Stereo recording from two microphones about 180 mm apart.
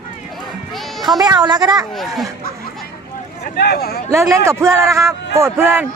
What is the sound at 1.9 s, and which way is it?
Speech, centre (ahead or behind).